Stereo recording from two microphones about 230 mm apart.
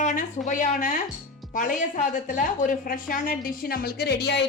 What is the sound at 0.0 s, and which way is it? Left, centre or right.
A woman's voice, left.